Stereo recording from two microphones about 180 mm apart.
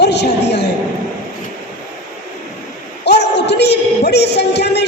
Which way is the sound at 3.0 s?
70° left (ahead or behind).